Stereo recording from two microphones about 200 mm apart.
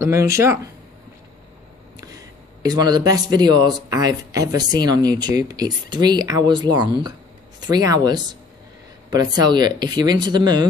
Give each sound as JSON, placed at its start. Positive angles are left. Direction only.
{"t": 0.0, "sound": "speech", "side_deg": -15}
{"t": 2.0, "sound": "a sound", "side_deg": -20}
{"t": 2.7, "sound": "speech", "side_deg": -20}